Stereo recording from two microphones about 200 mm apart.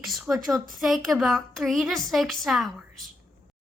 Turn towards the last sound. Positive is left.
turn(degrees=0)  # may be behind; listen again after turning